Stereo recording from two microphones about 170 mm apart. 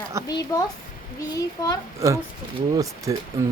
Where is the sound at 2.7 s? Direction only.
20° right (ahead or behind).